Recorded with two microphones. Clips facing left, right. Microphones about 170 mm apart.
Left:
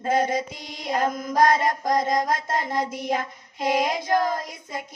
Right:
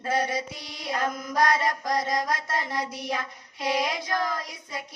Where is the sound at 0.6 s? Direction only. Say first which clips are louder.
Left 4 dB; 50° left (ahead or behind).